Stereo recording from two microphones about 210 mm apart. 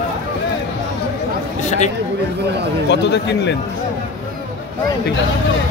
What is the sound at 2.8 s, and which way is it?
Speech, 55° left (ahead or behind).